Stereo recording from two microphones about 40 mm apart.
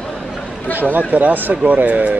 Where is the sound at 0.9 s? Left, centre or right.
Right.